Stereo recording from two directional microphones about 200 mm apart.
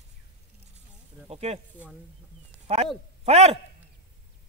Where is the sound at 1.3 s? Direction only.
30° right (ahead or behind).